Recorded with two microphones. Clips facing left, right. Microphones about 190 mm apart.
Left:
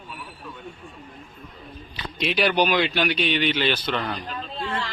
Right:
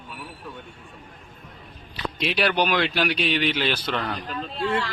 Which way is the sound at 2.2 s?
Centre (ahead or behind).